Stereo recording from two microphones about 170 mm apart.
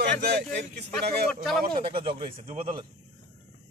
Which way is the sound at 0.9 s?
Centre (ahead or behind).